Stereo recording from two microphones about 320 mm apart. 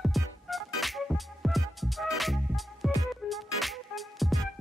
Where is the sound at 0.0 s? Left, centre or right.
Centre.